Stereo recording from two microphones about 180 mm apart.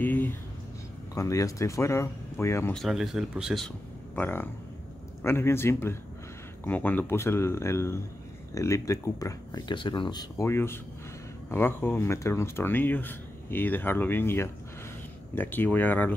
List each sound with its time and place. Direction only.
0.0 s a sound: 10° left (ahead or behind)
1.1 s speech: 20° left (ahead or behind)
2.7 s speech: centre (ahead or behind)